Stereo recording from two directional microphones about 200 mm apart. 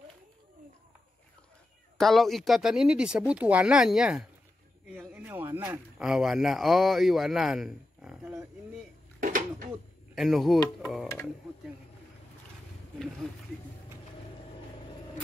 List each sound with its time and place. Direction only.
2.0 s speech: centre (ahead or behind)
9.2 s a sound: 45° right (ahead or behind)
10.1 s speech: centre (ahead or behind)